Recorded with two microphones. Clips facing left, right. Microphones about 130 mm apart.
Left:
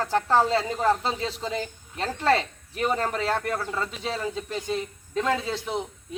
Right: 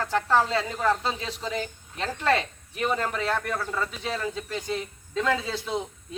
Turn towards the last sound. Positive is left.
turn(degrees=20)  # may be behind; listen again after turning